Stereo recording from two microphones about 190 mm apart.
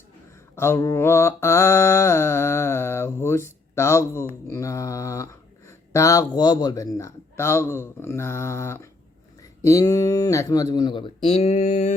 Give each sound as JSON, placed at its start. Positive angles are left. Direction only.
{"t": 0.5, "sound": "mantra", "side_deg": 15}
{"t": 9.6, "sound": "speech", "side_deg": 20}